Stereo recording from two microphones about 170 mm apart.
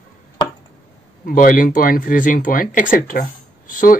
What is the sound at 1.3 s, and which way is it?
Speech, 55° left (ahead or behind).